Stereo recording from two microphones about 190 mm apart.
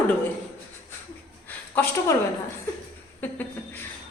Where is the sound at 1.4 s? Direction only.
10° left (ahead or behind).